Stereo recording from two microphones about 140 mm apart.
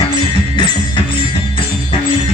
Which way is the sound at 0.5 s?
35° left (ahead or behind).